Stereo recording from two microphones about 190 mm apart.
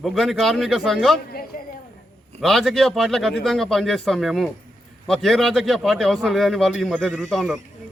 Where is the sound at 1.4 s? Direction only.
50° left (ahead or behind).